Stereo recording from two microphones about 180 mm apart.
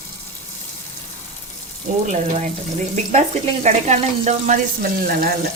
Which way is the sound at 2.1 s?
35° right (ahead or behind).